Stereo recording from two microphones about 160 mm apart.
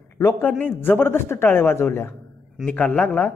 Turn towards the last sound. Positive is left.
turn(degrees=10)  # may be behind; listen again after turning